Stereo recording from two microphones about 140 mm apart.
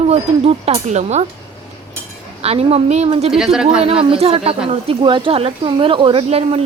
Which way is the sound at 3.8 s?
45° right (ahead or behind).